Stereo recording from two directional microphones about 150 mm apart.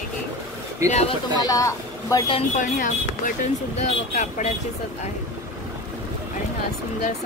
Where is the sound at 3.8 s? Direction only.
50° left (ahead or behind).